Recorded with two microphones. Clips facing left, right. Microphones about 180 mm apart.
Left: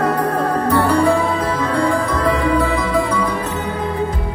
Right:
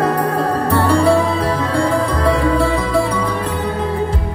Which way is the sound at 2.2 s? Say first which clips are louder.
Right 1 dB; 30° right (ahead or behind).